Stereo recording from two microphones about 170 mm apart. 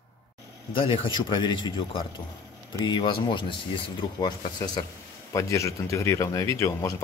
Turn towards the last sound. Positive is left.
turn(degrees=20)  # may be behind; listen again after turning